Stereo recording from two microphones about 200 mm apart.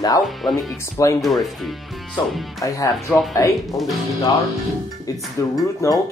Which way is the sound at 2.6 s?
15° left (ahead or behind).